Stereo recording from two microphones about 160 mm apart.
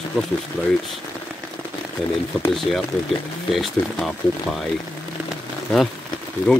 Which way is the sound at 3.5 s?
Centre (ahead or behind).